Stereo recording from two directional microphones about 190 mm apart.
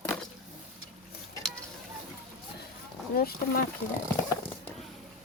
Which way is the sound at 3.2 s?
50° left (ahead or behind).